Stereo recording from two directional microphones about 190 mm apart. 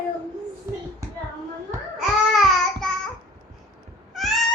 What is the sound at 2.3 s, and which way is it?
Child singing, centre (ahead or behind).